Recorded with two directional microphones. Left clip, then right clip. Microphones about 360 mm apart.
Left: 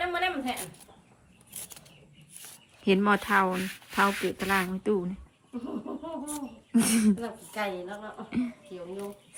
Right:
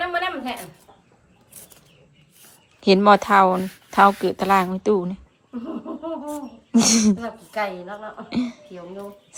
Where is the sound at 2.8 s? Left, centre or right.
Centre.